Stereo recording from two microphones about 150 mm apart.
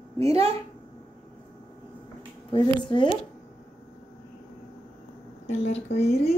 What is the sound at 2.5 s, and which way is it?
Speech, 30° left (ahead or behind).